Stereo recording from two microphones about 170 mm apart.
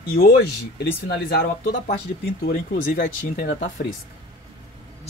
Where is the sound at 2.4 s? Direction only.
60° left (ahead or behind).